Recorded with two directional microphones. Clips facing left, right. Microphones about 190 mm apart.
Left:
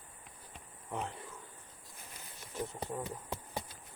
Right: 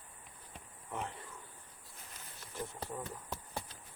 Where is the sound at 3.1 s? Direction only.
20° left (ahead or behind).